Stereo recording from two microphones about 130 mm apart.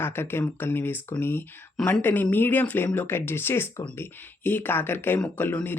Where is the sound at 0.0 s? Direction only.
15° left (ahead or behind).